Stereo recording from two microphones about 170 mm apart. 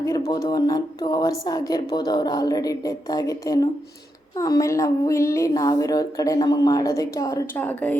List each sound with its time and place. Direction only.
0.3 s a woman's voice: 25° left (ahead or behind)
7.6 s speech: 10° left (ahead or behind)